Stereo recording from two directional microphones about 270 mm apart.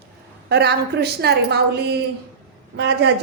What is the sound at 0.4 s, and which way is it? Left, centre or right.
A woman's voice, right.